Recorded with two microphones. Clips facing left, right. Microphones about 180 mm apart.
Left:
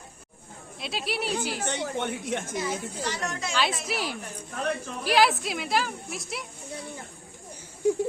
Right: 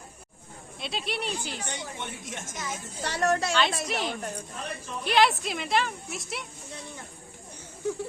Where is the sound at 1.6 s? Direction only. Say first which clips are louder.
Left 7 dB; 60° left (ahead or behind).